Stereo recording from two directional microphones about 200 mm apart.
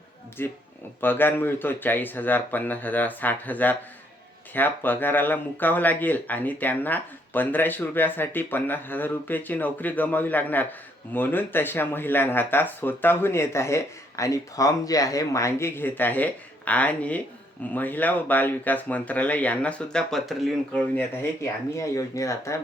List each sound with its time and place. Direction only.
0.4 s speech: 10° left (ahead or behind)